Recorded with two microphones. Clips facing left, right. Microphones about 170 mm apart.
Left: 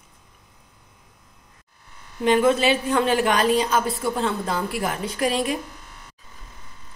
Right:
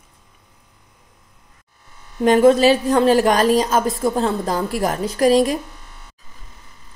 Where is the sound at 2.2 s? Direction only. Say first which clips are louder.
Right 6 dB; 40° right (ahead or behind).